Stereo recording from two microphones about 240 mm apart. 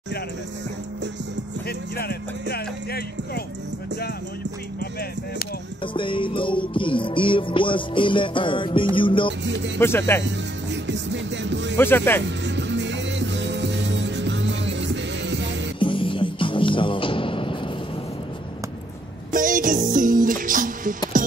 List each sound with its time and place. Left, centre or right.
1.7 s speech: left
5.9 s music: left
9.8 s speech: centre
10.2 s music: right
11.7 s speech: centre
12.4 s music: right
15.8 s music: left
19.3 s music: right